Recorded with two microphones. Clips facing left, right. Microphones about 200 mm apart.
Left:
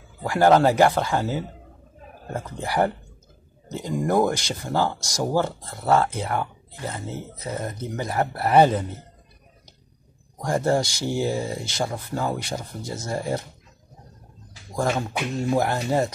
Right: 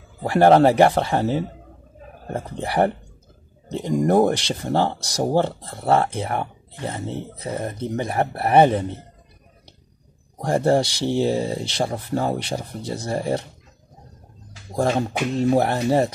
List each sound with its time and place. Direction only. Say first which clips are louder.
0.2 s a man's voice: right 3 dB; 30° right (ahead or behind)
10.3 s speech: right 3 dB; 30° right (ahead or behind)
14.7 s speech: right 4 dB; 35° right (ahead or behind)